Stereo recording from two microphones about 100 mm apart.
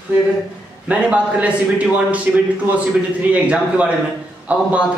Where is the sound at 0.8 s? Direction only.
10° right (ahead or behind).